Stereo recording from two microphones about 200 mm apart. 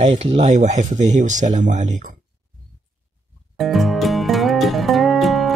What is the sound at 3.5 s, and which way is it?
Music, centre (ahead or behind).